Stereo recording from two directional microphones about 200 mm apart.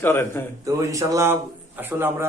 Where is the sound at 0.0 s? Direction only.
15° left (ahead or behind).